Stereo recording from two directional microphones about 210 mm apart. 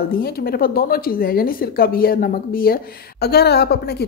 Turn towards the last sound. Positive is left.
turn(degrees=50)  # may be behind; listen again after turning